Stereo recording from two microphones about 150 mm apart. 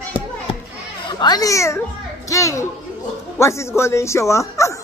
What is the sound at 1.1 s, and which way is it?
A child's voice, 25° left (ahead or behind).